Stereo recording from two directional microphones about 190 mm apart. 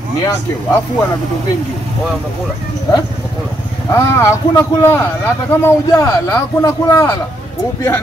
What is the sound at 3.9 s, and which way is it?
Speech, 15° left (ahead or behind).